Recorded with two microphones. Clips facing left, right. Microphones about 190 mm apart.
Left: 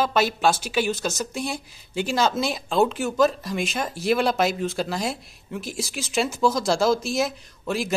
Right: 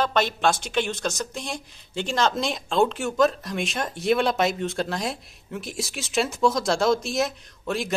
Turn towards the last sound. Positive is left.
turn(degrees=0)  # may be behind; listen again after turning